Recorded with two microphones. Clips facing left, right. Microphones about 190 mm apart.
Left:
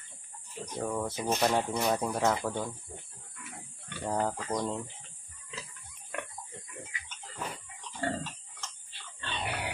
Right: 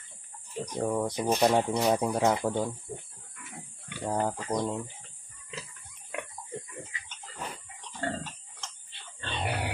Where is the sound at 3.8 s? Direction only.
10° right (ahead or behind).